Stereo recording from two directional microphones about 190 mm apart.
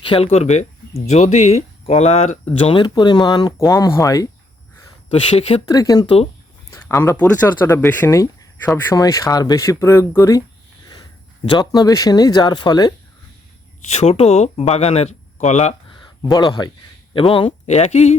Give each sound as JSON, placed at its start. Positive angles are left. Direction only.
{"t": 0.0, "sound": "speech", "side_deg": 30}
{"t": 2.6, "sound": "speech", "side_deg": 25}
{"t": 5.0, "sound": "speech", "side_deg": 30}
{"t": 5.6, "sound": "speech", "side_deg": 20}
{"t": 6.7, "sound": "speech", "side_deg": 15}
{"t": 13.9, "sound": "speech", "side_deg": 35}
{"t": 16.3, "sound": "speech", "side_deg": 20}